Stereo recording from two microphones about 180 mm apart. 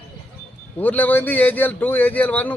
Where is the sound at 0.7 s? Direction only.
10° left (ahead or behind).